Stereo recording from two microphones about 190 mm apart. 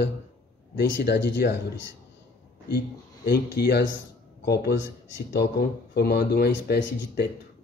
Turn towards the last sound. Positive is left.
turn(degrees=65)  # may be behind; listen again after turning